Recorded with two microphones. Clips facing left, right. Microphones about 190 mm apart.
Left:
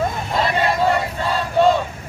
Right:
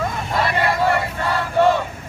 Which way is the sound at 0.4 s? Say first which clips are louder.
Left 1 dB; 20° left (ahead or behind).